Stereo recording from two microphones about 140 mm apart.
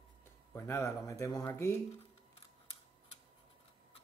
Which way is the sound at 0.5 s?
15° left (ahead or behind).